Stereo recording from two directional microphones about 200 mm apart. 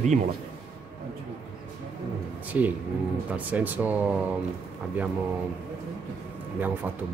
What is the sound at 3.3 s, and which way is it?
Speech, 10° right (ahead or behind).